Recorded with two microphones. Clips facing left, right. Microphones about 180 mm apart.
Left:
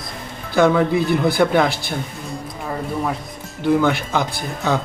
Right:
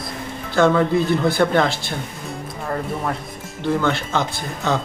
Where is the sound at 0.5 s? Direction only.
15° left (ahead or behind).